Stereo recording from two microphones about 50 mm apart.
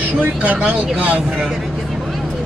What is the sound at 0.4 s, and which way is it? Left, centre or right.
Speech, right.